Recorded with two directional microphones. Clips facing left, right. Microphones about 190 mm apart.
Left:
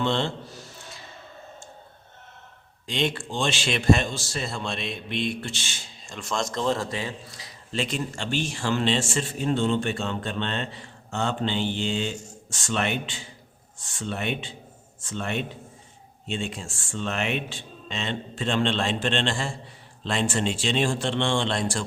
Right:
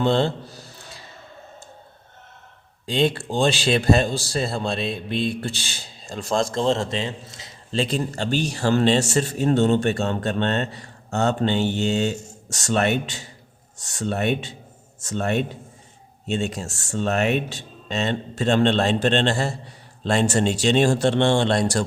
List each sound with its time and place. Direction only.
0.0 s a man's voice: 35° right (ahead or behind)
2.8 s a man's voice: 35° right (ahead or behind)